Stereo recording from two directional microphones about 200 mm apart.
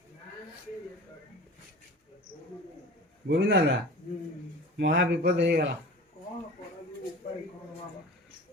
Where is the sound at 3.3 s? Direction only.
60° right (ahead or behind).